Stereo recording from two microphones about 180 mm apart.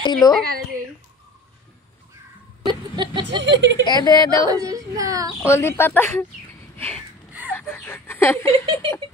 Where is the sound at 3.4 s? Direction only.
75° right (ahead or behind).